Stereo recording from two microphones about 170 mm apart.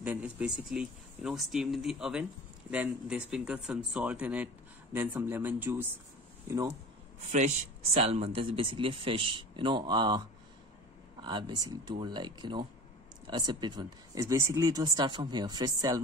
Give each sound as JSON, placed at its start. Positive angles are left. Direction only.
{"t": 0.0, "sound": "speech", "side_deg": -10}
{"t": 7.2, "sound": "speech", "side_deg": -45}
{"t": 11.2, "sound": "speech", "side_deg": -25}